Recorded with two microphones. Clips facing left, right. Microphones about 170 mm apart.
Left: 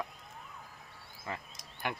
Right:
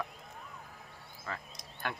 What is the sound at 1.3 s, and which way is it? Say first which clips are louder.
Speech: left 1 dB; 20° left (ahead or behind).